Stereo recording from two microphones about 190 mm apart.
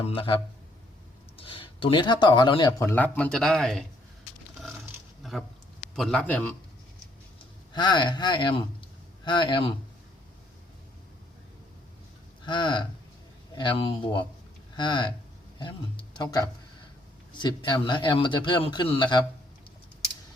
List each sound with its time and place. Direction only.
0.0 s speech: 30° left (ahead or behind)
1.4 s speech: 30° left (ahead or behind); by 3.8 s centre (ahead or behind)
5.2 s a sound: centre (ahead or behind)
6.0 s a man's voice: 5° left (ahead or behind)
7.7 s speech: 20° left (ahead or behind)
12.5 s speech: 25° left (ahead or behind)